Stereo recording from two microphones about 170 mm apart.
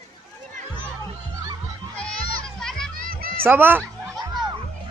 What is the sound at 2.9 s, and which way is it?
Children playing, 55° right (ahead or behind).